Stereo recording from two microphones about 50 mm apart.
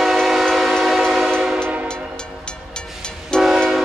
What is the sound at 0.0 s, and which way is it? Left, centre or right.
Train, centre.